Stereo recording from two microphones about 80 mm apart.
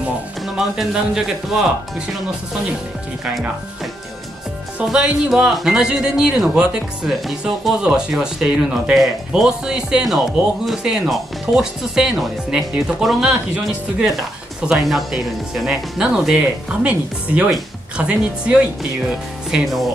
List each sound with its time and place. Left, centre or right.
0.6 s speech: centre
4.8 s speech: centre